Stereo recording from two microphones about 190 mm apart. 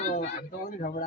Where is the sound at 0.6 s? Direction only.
50° left (ahead or behind).